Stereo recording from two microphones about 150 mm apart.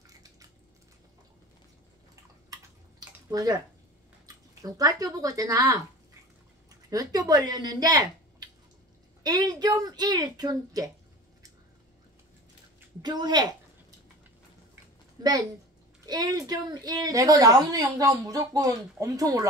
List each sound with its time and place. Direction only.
0.0 s a sound: 25° right (ahead or behind)
3.3 s a woman's voice: 25° right (ahead or behind)
6.9 s a woman's voice: 25° right (ahead or behind)
13.0 s a woman's voice: 30° right (ahead or behind)
15.2 s a woman's voice: 25° right (ahead or behind)